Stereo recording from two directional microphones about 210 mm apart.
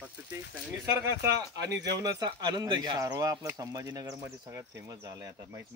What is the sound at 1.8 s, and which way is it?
Speech, 20° right (ahead or behind).